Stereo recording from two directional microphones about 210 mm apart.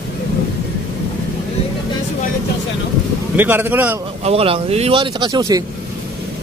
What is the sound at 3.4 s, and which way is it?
Speech, 10° right (ahead or behind).